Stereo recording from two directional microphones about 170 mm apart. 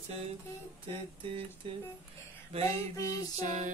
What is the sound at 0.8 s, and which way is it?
Music, 30° right (ahead or behind).